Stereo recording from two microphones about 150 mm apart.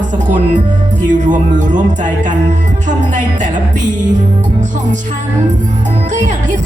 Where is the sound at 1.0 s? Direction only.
55° right (ahead or behind).